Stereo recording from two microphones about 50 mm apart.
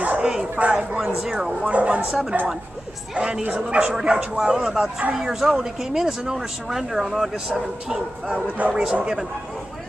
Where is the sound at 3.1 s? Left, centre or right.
Centre.